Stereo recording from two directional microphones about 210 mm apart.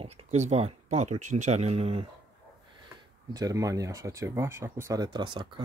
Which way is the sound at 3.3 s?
15° right (ahead or behind).